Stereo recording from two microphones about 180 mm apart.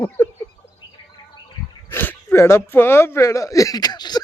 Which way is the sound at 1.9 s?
10° left (ahead or behind).